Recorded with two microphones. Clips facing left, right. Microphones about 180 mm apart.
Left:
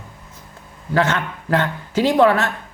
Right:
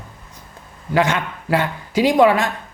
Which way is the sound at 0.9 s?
15° right (ahead or behind).